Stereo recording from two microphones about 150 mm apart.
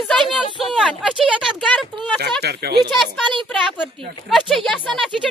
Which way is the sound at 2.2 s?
90° right.